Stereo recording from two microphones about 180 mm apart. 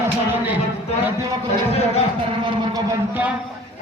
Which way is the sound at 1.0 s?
15° right (ahead or behind).